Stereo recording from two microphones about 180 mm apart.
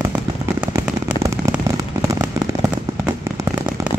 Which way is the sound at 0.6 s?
15° right (ahead or behind).